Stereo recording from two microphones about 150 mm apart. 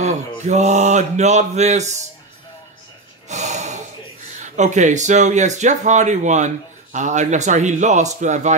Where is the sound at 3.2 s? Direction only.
50° right (ahead or behind).